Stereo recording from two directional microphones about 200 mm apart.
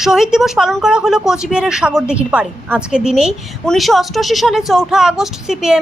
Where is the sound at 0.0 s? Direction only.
Centre (ahead or behind).